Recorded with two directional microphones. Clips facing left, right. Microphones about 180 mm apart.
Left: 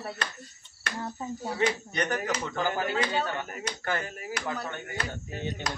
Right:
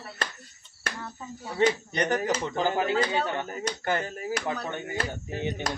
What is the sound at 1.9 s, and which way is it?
Speech, 30° right (ahead or behind).